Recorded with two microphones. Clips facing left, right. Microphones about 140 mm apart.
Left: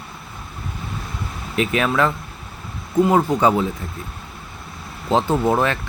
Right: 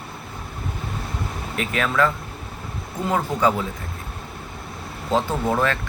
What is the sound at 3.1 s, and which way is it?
Speech, 20° left (ahead or behind).